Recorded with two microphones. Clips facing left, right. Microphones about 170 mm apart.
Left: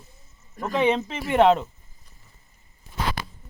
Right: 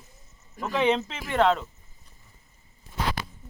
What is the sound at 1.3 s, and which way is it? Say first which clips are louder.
Speech: left 5 dB; 25° left (ahead or behind).